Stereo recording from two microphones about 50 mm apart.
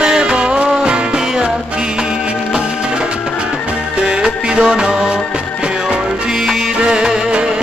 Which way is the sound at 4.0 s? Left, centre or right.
Centre.